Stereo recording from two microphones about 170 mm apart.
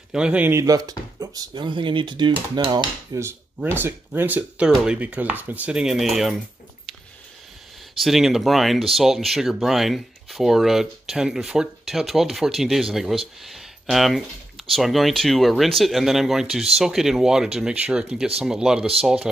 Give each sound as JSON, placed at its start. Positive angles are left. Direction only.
{"t": 0.1, "sound": "speech", "side_deg": -5}
{"t": 3.3, "sound": "speech", "side_deg": -10}
{"t": 8.0, "sound": "speech", "side_deg": 0}